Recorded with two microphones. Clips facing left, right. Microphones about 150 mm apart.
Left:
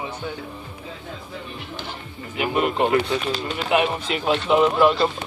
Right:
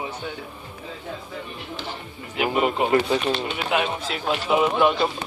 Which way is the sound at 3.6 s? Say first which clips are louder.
Left 3 dB; centre (ahead or behind).